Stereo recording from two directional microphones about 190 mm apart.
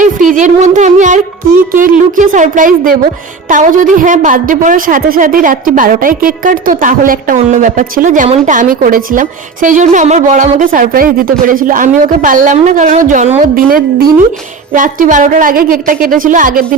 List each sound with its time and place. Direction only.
0.3 s music: 40° right (ahead or behind)
1.7 s a woman's voice: 45° right (ahead or behind)